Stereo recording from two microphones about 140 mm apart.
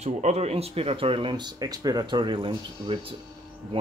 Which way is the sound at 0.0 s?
55° right (ahead or behind).